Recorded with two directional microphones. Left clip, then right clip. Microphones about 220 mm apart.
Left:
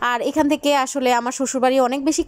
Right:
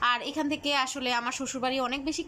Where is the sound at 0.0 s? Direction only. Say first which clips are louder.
Left 8 dB; 30° left (ahead or behind).